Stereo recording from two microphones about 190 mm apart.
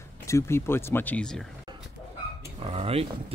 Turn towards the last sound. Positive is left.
turn(degrees=-30)  # may be behind; listen again after turning